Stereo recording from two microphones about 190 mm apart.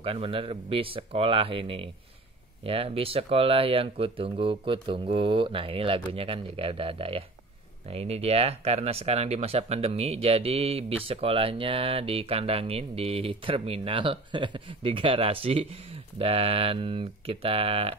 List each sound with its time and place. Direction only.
0.0 s speech: 30° right (ahead or behind)